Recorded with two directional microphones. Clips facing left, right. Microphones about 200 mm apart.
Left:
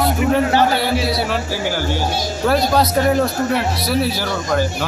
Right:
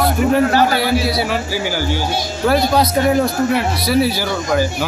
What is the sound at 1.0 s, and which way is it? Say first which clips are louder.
A man's voice: right 1 dB; centre (ahead or behind).